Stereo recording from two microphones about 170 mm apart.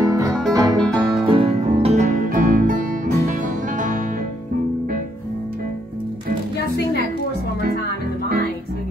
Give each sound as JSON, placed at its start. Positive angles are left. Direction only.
{"t": 0.0, "sound": "music", "side_deg": -20}
{"t": 0.7, "sound": "music", "side_deg": 5}
{"t": 1.3, "sound": "music", "side_deg": -35}
{"t": 2.2, "sound": "music", "side_deg": -55}